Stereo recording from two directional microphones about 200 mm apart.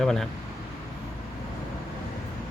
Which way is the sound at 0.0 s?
Centre (ahead or behind).